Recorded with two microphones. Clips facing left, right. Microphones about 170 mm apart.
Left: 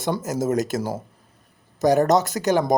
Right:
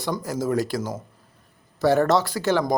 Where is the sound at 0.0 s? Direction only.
20° left (ahead or behind).